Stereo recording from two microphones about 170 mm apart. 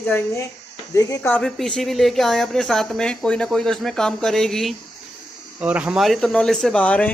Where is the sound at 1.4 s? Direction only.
5° left (ahead or behind).